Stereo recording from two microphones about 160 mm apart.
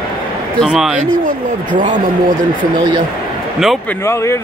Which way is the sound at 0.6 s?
Centre (ahead or behind).